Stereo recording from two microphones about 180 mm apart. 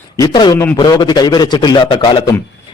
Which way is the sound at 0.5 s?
15° left (ahead or behind).